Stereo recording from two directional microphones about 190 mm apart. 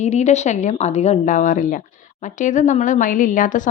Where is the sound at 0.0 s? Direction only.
35° left (ahead or behind).